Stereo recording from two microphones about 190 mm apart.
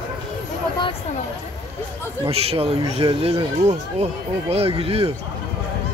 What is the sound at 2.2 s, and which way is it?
Speech, 30° right (ahead or behind).